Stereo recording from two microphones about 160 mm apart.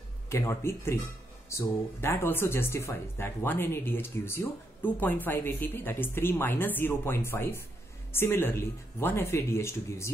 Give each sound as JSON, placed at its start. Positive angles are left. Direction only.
{"t": 0.3, "sound": "speech", "side_deg": 15}